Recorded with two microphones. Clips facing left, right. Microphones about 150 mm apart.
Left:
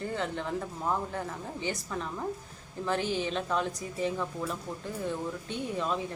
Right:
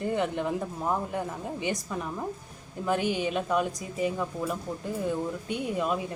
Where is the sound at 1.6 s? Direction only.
15° right (ahead or behind).